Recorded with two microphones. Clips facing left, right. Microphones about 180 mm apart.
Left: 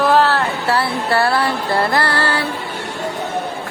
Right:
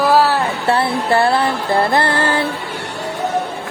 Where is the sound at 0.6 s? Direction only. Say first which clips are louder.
Right 4 dB; 25° right (ahead or behind).